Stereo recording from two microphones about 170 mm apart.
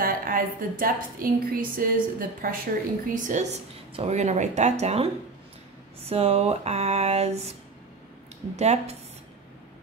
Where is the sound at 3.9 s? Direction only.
40° right (ahead or behind).